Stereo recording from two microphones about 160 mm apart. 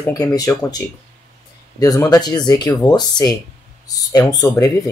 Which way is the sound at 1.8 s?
20° left (ahead or behind).